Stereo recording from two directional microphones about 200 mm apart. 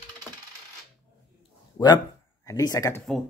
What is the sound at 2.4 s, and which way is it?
Speech, 15° left (ahead or behind).